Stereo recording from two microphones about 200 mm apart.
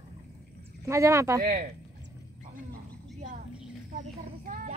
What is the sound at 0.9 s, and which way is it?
Speech, 15° right (ahead or behind).